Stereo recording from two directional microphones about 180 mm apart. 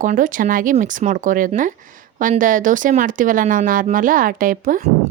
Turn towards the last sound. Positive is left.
turn(degrees=-45)  # may be behind; listen again after turning